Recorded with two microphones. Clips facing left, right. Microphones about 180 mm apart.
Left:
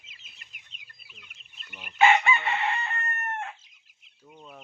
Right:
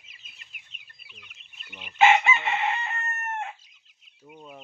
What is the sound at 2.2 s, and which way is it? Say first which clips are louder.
Chicken: right 1 dB; 20° right (ahead or behind).